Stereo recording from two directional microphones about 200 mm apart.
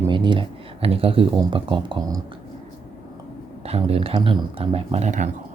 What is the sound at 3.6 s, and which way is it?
Speech, 30° right (ahead or behind).